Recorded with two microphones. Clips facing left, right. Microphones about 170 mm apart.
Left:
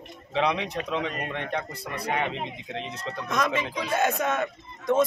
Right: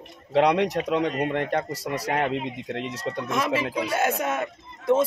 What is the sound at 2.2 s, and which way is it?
Speech, 70° right (ahead or behind).